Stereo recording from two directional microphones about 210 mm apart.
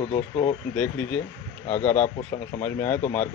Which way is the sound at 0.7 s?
5° left (ahead or behind).